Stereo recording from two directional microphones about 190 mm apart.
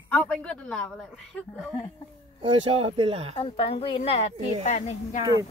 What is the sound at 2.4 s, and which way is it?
Speech, 30° right (ahead or behind).